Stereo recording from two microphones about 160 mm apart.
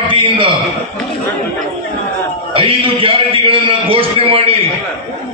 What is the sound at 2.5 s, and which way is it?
A man's voice, 35° right (ahead or behind).